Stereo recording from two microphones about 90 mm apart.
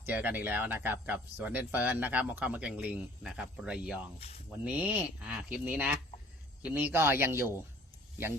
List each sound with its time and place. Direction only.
0.0 s speech: 20° right (ahead or behind)
6.9 s speech: 25° right (ahead or behind)